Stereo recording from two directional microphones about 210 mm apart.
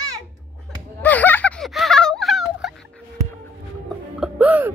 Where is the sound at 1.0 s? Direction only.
5° left (ahead or behind).